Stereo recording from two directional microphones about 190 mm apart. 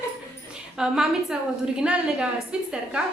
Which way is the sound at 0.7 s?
5° right (ahead or behind).